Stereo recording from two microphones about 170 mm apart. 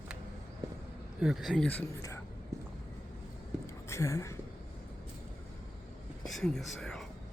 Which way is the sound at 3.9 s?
20° left (ahead or behind).